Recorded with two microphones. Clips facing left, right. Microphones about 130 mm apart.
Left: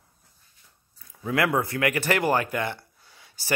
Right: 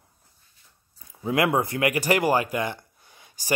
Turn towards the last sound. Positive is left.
turn(degrees=-15)  # may be behind; listen again after turning